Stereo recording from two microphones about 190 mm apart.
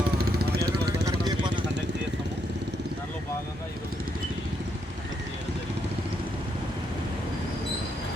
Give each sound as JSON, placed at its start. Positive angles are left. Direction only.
{"t": 0.2, "sound": "vehicle", "side_deg": -55}
{"t": 1.3, "sound": "vehicle", "side_deg": -25}